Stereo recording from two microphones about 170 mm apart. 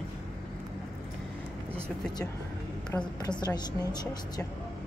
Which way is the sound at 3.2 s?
25° left (ahead or behind).